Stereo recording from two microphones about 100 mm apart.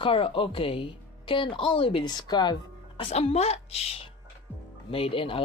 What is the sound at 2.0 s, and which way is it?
Speech, 45° left (ahead or behind).